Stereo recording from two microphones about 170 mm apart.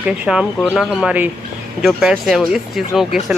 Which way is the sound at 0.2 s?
5° right (ahead or behind).